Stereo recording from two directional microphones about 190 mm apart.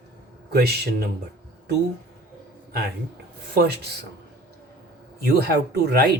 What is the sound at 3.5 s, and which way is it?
Speech, 55° right (ahead or behind).